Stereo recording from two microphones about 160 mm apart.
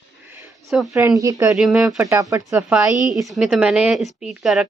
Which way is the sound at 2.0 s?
20° right (ahead or behind).